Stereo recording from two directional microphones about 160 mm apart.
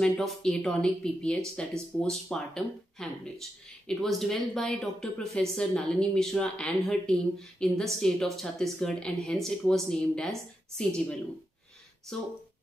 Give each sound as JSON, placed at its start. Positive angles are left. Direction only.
{"t": 0.0, "sound": "a woman's voice", "side_deg": 0}
{"t": 12.1, "sound": "a woman's voice", "side_deg": 5}